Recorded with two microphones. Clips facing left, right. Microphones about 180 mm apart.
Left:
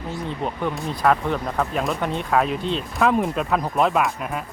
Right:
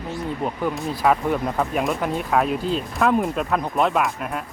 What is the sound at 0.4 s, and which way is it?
Speech, 5° right (ahead or behind).